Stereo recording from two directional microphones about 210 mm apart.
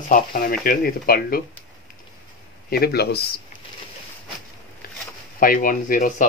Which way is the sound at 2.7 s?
50° left (ahead or behind).